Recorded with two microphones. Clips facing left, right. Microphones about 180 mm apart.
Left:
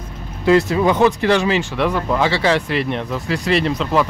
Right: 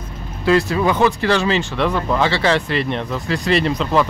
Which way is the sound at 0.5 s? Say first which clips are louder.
Left 2 dB; 20° left (ahead or behind).